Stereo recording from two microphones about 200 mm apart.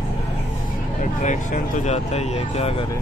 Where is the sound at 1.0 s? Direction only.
40° left (ahead or behind).